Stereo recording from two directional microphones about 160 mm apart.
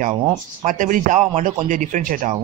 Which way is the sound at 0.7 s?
55° right (ahead or behind).